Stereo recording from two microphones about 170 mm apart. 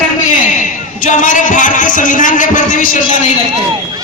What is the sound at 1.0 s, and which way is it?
Speech, 50° left (ahead or behind).